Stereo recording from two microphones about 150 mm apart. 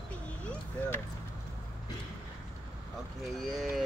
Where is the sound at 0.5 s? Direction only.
15° left (ahead or behind).